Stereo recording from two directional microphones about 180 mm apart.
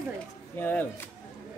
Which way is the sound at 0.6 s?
10° left (ahead or behind).